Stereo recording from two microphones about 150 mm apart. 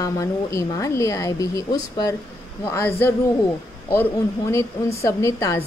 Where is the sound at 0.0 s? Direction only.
20° left (ahead or behind).